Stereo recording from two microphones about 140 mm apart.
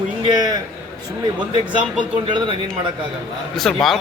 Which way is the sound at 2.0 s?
35° right (ahead or behind).